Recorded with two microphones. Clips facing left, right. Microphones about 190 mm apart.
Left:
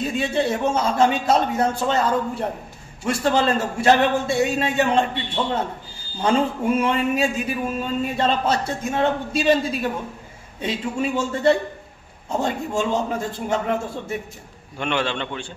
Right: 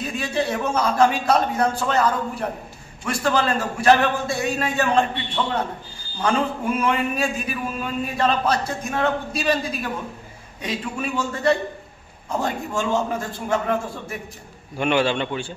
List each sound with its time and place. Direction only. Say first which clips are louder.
0.2 s a man's voice: left 2 dB; 25° left (ahead or behind)
6.8 s a man's voice: even; 25° left (ahead or behind)
14.8 s a man's voice: right 4 dB; 10° right (ahead or behind)